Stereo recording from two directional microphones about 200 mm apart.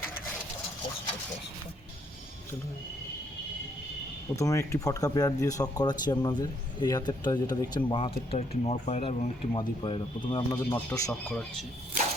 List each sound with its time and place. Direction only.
4.4 s speech: 15° left (ahead or behind); by 9.3 s 35° left (ahead or behind)
9.6 s speech: 25° left (ahead or behind)
10.7 s speech: 10° left (ahead or behind)